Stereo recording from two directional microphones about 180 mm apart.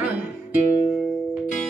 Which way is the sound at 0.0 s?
10° right (ahead or behind).